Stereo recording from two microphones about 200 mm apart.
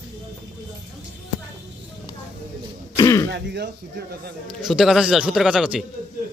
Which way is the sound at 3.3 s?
55° right (ahead or behind).